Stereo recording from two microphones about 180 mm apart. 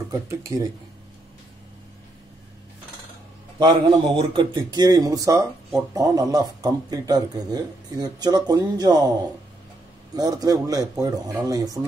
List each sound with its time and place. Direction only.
0.1 s speech: 20° right (ahead or behind)
3.5 s a man's voice: 25° right (ahead or behind)
10.1 s a man's voice: 20° right (ahead or behind)